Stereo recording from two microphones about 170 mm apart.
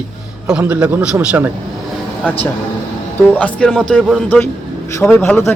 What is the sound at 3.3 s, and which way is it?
A man's voice, 5° left (ahead or behind).